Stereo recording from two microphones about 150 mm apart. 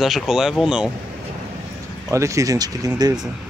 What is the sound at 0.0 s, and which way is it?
Speech, centre (ahead or behind).